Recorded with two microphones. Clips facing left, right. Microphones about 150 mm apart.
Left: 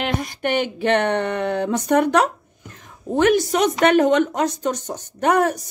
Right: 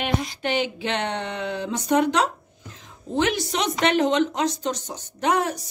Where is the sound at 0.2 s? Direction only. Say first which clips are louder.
Left 3 dB; 55° left (ahead or behind).